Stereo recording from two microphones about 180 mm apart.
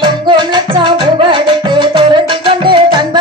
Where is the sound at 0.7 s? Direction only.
25° right (ahead or behind).